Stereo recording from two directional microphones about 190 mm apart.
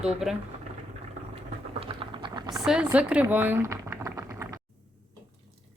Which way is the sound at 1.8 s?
25° right (ahead or behind).